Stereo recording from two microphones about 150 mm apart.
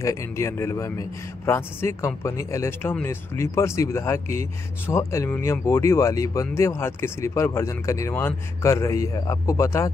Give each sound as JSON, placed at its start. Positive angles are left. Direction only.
{"t": 0.0, "sound": "speech", "side_deg": 20}